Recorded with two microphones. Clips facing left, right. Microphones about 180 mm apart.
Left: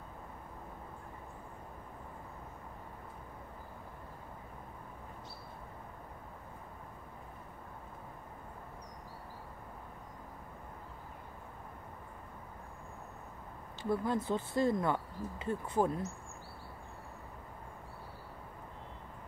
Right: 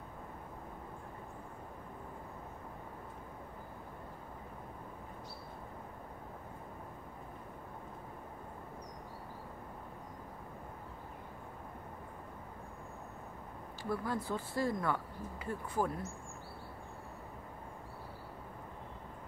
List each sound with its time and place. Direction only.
13.8 s speech: 20° left (ahead or behind)